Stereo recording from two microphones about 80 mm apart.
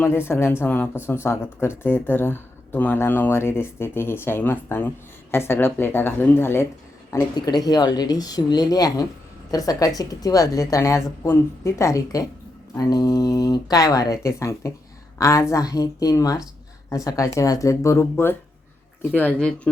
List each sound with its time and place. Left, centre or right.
0.0 s speech: left
7.1 s speech: left
7.5 s a woman's voice: left
18.0 s speech: left